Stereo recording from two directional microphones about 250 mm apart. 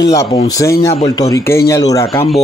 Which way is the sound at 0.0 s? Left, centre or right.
Centre.